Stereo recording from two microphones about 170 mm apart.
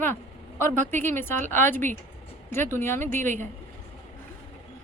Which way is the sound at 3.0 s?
45° right (ahead or behind).